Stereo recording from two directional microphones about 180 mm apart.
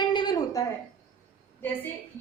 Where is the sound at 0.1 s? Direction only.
25° left (ahead or behind).